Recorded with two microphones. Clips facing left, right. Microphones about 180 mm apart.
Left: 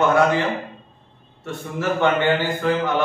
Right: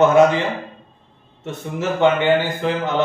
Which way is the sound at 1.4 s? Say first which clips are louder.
Right 1 dB; 20° right (ahead or behind).